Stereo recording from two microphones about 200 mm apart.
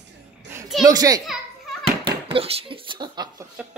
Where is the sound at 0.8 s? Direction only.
20° right (ahead or behind).